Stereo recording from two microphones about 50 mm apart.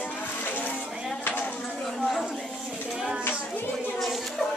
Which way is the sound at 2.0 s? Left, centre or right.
Centre.